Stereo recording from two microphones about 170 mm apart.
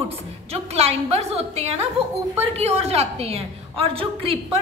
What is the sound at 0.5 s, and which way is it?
A woman's voice, 40° right (ahead or behind).